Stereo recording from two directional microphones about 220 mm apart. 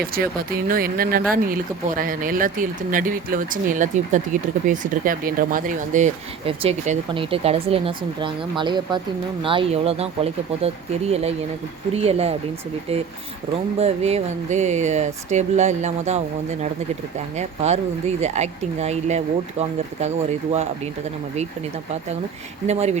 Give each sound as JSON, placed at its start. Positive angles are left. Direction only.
{"t": 0.0, "sound": "speech", "side_deg": -45}
{"t": 11.1, "sound": "speech", "side_deg": -30}
{"t": 13.7, "sound": "speech", "side_deg": -30}
{"t": 17.3, "sound": "speech", "side_deg": -30}
{"t": 22.6, "sound": "speech", "side_deg": -30}